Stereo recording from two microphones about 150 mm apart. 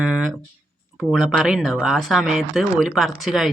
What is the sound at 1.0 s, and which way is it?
Speech, centre (ahead or behind).